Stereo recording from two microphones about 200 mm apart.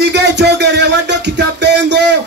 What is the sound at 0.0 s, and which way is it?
Music, 60° right (ahead or behind).